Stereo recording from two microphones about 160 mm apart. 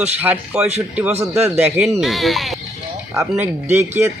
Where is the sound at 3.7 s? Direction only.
15° right (ahead or behind).